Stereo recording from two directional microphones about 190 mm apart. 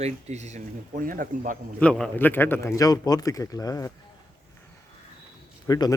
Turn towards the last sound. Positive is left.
turn(degrees=20)  # may be behind; listen again after turning